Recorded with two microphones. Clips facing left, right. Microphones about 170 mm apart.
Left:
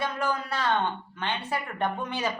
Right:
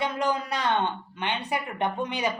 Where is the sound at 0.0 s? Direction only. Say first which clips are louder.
Right 2 dB; 20° right (ahead or behind).